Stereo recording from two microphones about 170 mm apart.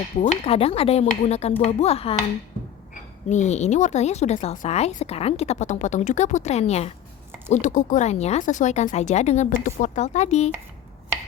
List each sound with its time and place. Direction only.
0.2 s speech: 40° left (ahead or behind)